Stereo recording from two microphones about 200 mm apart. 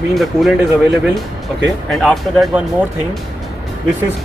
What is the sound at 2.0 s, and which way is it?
Speech, centre (ahead or behind).